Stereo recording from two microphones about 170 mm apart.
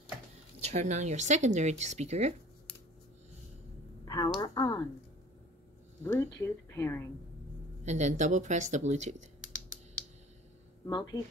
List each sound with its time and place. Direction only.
0.6 s speech: 40° right (ahead or behind)
4.0 s a sound: 25° left (ahead or behind)
6.2 s speech: 20° left (ahead or behind)
7.8 s speech: 45° right (ahead or behind)
10.9 s speech: 30° left (ahead or behind)